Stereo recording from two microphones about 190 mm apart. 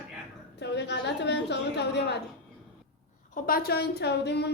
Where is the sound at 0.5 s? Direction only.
65° left (ahead or behind).